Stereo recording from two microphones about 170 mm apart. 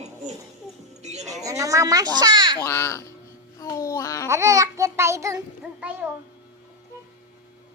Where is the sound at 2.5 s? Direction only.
15° left (ahead or behind).